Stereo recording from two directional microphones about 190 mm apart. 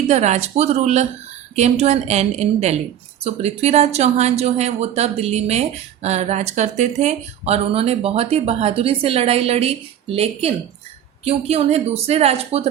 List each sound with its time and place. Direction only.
0.1 s speech: 35° right (ahead or behind)